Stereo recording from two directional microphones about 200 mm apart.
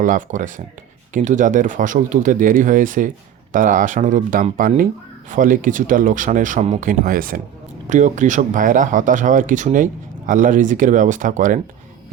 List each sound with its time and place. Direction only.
0.0 s speech: 40° right (ahead or behind)